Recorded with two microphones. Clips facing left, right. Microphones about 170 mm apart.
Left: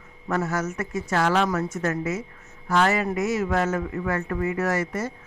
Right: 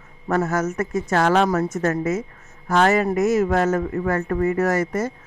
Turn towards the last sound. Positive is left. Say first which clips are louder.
# right 5 dB
turn(degrees=-45)  # may be behind; listen again after turning